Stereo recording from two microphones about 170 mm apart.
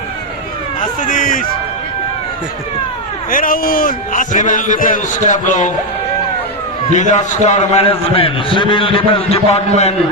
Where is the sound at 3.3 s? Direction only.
55° left (ahead or behind).